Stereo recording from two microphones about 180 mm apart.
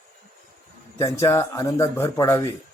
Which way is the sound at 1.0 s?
15° left (ahead or behind).